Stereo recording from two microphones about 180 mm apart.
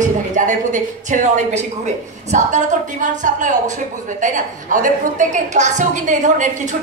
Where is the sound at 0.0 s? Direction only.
45° right (ahead or behind).